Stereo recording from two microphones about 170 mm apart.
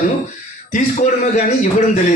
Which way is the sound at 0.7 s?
45° left (ahead or behind).